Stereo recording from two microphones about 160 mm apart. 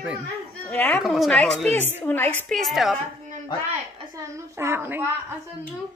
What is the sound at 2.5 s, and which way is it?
Speech, centre (ahead or behind).